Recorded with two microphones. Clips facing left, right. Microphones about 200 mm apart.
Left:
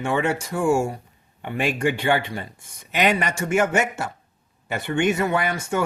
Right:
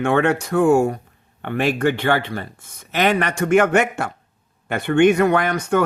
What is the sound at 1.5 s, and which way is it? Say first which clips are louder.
Speech: right 4 dB; 10° left (ahead or behind).